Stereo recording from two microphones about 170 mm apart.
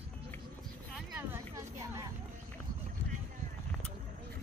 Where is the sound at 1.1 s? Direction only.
15° right (ahead or behind).